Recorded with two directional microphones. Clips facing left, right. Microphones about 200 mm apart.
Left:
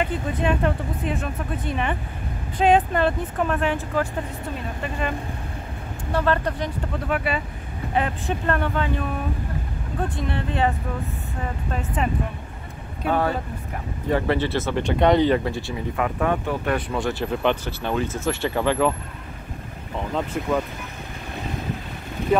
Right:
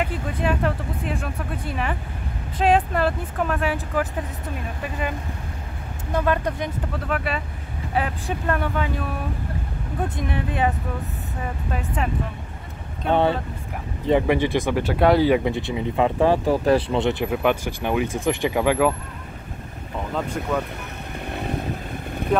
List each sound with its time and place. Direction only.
0.0 s speech: centre (ahead or behind)
6.1 s speech: 15° right (ahead or behind)
7.1 s speech: centre (ahead or behind)
10.0 s speech: 10° right (ahead or behind)
14.0 s speech: 15° right (ahead or behind)
17.3 s speech: 10° right (ahead or behind)
20.4 s speech: 5° left (ahead or behind)